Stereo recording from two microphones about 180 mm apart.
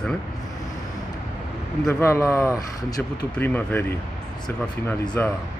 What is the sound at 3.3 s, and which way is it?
Speech, 10° left (ahead or behind).